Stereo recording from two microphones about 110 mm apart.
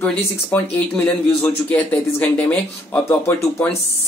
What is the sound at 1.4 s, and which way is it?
A man's voice, 15° left (ahead or behind).